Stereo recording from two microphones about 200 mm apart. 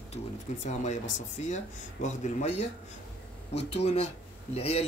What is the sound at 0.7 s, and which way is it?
Speech, 35° left (ahead or behind).